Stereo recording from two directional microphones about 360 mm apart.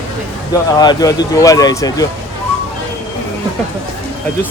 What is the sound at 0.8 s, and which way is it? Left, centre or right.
Speech, centre.